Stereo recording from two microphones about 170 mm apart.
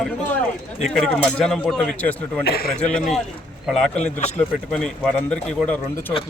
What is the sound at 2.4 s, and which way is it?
Speech, 65° left (ahead or behind).